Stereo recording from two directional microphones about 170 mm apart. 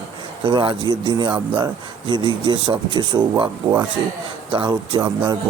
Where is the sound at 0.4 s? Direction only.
30° right (ahead or behind).